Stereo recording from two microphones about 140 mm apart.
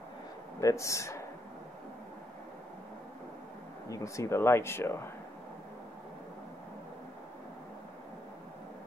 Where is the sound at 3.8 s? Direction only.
20° left (ahead or behind).